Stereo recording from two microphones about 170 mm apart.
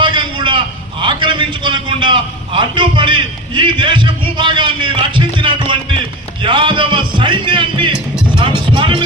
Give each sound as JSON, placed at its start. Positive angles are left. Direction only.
{"t": 0.0, "sound": "a sound", "side_deg": -30}
{"t": 6.4, "sound": "a man's voice", "side_deg": -30}
{"t": 8.4, "sound": "music", "side_deg": -25}